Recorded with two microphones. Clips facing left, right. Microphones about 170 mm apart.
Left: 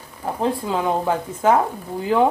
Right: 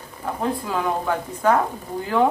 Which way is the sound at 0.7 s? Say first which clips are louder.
Left 2 dB; 25° left (ahead or behind).